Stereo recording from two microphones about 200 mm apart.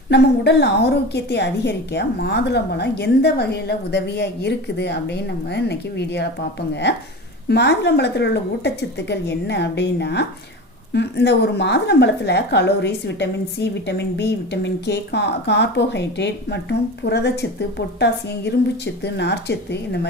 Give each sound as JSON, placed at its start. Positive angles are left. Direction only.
{"t": 0.1, "sound": "a woman's voice", "side_deg": 60}
{"t": 7.4, "sound": "a woman's voice", "side_deg": 55}